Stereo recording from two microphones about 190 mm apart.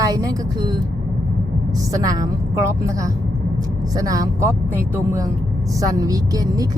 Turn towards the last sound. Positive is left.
turn(degrees=-20)  # may be behind; listen again after turning